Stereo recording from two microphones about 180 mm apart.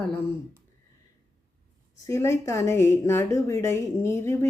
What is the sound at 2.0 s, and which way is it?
A woman's voice, 15° left (ahead or behind).